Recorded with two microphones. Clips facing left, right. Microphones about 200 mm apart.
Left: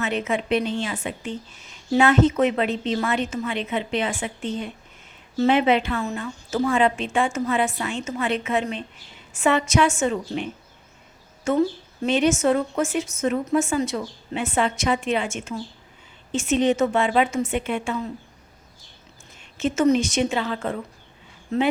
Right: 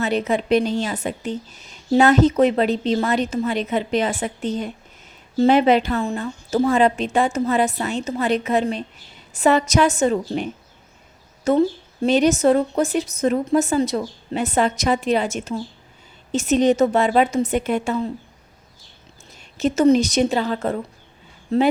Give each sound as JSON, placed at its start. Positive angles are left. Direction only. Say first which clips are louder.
{"t": 0.0, "sound": "speech", "louder": "right 4 dB", "side_deg": -35}
{"t": 19.4, "sound": "speech", "louder": "right 3 dB", "side_deg": -40}